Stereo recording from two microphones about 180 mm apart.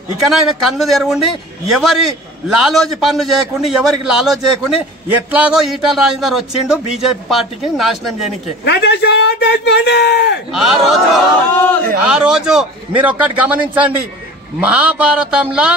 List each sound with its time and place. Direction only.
0.3 s a man's voice: centre (ahead or behind)
8.6 s a man's voice: 70° left (ahead or behind)
10.5 s a man's voice: centre (ahead or behind)
11.5 s a man's voice: 10° left (ahead or behind)
12.1 s a man's voice: 5° right (ahead or behind)
13.2 s a sound: 5° right (ahead or behind)